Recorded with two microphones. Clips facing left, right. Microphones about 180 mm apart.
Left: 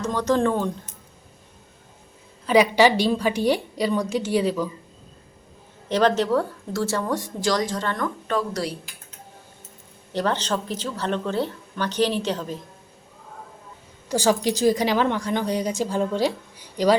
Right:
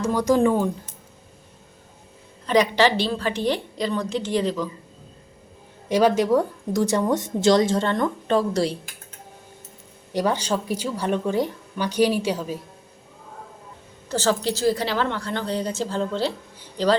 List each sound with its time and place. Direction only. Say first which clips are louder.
0.0 s a woman's voice: right 2 dB; 10° right (ahead or behind)
2.5 s a woman's voice: left 2 dB; 10° left (ahead or behind)
5.9 s a woman's voice: right 2 dB; 10° right (ahead or behind); by 8.7 s 30° right (ahead or behind)
10.1 s a woman's voice: right 1 dB; 10° right (ahead or behind)
14.1 s a woman's voice: left 2 dB; 15° left (ahead or behind)